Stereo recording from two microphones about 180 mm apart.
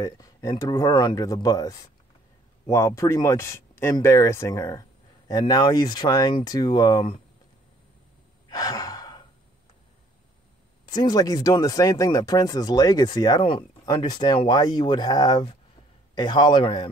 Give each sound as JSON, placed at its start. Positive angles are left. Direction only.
{"t": 0.0, "sound": "speech", "side_deg": 20}
{"t": 8.5, "sound": "sigh", "side_deg": 20}
{"t": 10.9, "sound": "speech", "side_deg": 20}